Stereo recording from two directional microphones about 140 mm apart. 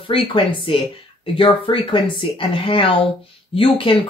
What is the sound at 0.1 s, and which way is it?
Speech, 40° left (ahead or behind).